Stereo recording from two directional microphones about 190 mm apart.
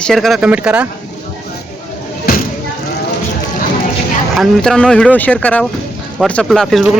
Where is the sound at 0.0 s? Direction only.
Centre (ahead or behind).